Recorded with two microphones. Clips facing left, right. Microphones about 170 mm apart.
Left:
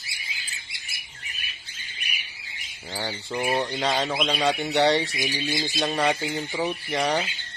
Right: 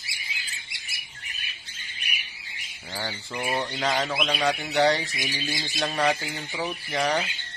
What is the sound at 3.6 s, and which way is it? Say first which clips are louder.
Speech: left 2 dB; 20° left (ahead or behind).